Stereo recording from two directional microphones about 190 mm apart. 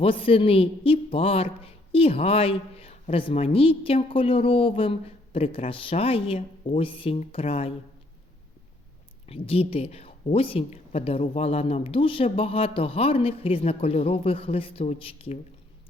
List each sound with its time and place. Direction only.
0.0 s a woman's voice: 30° left (ahead or behind)
9.2 s a woman's voice: 30° left (ahead or behind)